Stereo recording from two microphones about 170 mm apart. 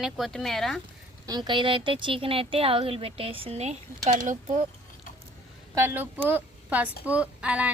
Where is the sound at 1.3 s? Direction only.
25° right (ahead or behind); by 4.6 s 50° right (ahead or behind).